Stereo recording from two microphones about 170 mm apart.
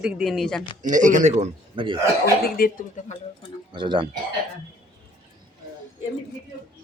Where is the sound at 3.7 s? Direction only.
30° right (ahead or behind).